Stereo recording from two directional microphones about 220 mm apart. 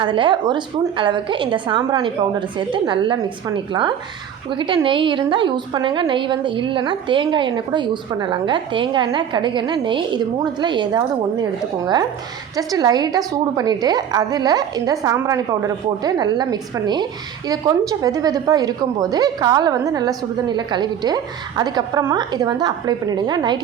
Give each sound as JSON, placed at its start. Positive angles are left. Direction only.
{"t": 0.0, "sound": "a woman's voice", "side_deg": -20}
{"t": 12.5, "sound": "a woman's voice", "side_deg": -15}